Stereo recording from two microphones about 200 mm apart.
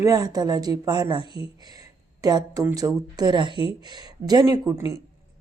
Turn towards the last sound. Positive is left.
turn(degrees=-15)  # may be behind; listen again after turning